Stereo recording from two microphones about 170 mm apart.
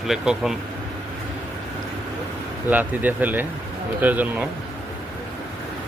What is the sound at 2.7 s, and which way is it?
Speech, 10° right (ahead or behind).